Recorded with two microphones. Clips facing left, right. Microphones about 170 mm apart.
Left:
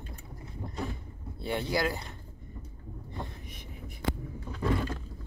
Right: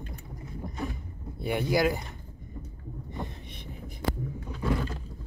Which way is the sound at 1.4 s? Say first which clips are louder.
Right 4 dB; 15° right (ahead or behind).